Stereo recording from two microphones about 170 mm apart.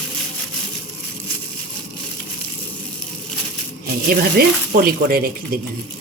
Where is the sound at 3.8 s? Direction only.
60° right (ahead or behind).